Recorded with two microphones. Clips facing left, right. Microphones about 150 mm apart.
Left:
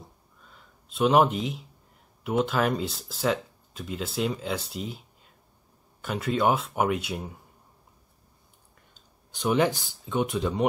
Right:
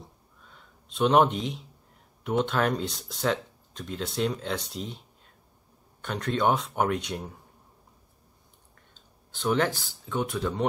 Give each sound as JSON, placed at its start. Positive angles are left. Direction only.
{"t": 0.0, "sound": "a sound", "side_deg": 0}
{"t": 2.2, "sound": "speech", "side_deg": 5}
{"t": 9.3, "sound": "speech", "side_deg": 15}